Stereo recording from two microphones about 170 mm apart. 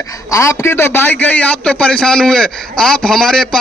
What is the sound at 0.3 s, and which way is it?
A man's voice, 15° left (ahead or behind).